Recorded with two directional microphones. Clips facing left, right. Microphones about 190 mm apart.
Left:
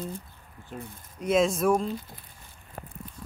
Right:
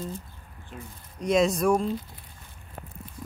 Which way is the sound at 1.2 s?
Centre (ahead or behind).